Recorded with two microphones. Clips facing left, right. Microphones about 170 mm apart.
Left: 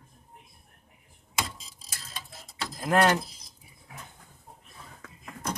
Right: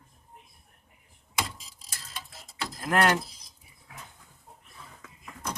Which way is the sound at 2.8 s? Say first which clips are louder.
Left 2 dB; 20° left (ahead or behind).